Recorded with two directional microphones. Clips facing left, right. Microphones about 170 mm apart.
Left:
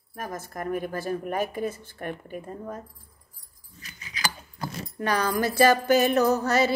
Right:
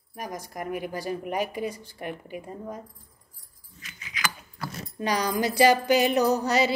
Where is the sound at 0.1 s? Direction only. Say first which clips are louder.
Left 1 dB; 15° right (ahead or behind).